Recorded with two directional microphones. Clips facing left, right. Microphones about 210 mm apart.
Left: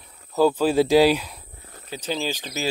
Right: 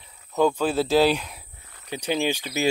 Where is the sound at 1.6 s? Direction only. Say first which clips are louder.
Left 7 dB; 40° left (ahead or behind).